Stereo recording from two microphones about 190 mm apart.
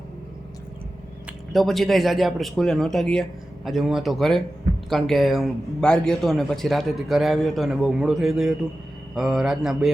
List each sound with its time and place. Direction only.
1.5 s a man's voice: centre (ahead or behind)